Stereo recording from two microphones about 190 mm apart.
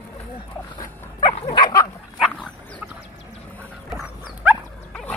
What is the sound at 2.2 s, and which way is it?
Dog, 5° right (ahead or behind).